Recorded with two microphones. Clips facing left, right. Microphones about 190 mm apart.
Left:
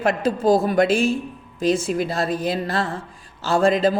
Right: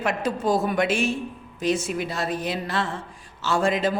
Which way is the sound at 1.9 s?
35° left (ahead or behind).